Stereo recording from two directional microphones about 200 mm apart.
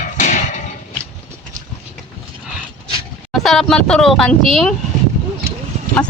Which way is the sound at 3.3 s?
Centre (ahead or behind).